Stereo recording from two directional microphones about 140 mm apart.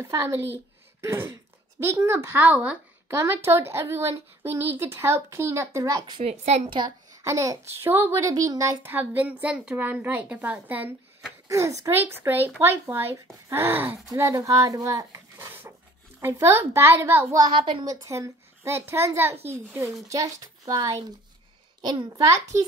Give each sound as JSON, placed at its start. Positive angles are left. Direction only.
{"t": 0.0, "sound": "a woman's voice", "side_deg": -20}
{"t": 6.2, "sound": "a woman's voice", "side_deg": -50}
{"t": 7.2, "sound": "a child's voice", "side_deg": -20}
{"t": 17.4, "sound": "speech", "side_deg": -35}
{"t": 18.0, "sound": "a woman's voice", "side_deg": -20}